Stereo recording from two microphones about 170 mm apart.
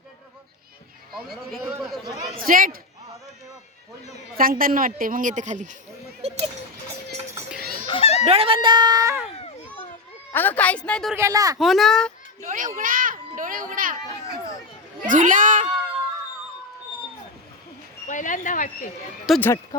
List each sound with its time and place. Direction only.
1.1 s a man's voice: centre (ahead or behind)
2.4 s a man's voice: 55° right (ahead or behind)
4.4 s a woman's voice: 55° right (ahead or behind)
6.2 s music: 35° right (ahead or behind)
7.9 s children playing: 35° left (ahead or behind)
8.3 s speech: 35° right (ahead or behind)
10.3 s a woman's voice: 10° left (ahead or behind)
11.1 s speech: 20° right (ahead or behind)
11.5 s speech: centre (ahead or behind)
12.4 s a sound: 50° right (ahead or behind)
15.0 s a woman's voice: 50° right (ahead or behind)
18.1 s speech: 50° left (ahead or behind)
19.3 s speech: centre (ahead or behind)